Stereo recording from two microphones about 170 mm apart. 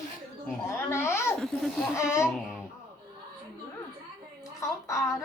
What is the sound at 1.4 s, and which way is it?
Speech, centre (ahead or behind).